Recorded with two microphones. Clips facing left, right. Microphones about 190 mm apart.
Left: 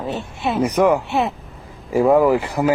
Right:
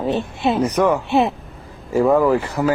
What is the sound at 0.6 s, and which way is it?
Speech, 15° left (ahead or behind).